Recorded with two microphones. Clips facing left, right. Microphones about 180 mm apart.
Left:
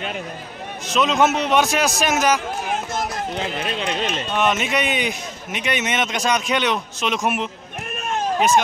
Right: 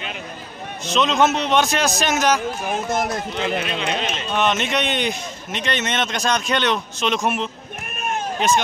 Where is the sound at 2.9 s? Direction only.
55° right (ahead or behind).